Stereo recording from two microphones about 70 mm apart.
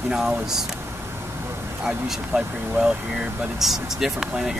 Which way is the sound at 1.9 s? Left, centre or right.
Centre.